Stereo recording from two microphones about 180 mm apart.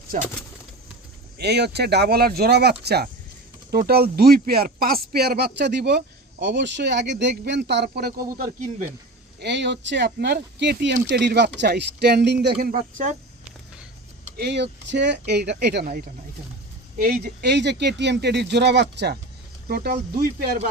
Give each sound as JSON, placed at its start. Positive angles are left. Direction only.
{"t": 1.4, "sound": "speech", "side_deg": -65}
{"t": 9.4, "sound": "speech", "side_deg": -75}
{"t": 14.3, "sound": "speech", "side_deg": -60}
{"t": 17.0, "sound": "speech", "side_deg": -55}
{"t": 19.6, "sound": "speech", "side_deg": -60}